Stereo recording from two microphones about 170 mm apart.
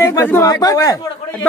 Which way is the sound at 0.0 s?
15° left (ahead or behind).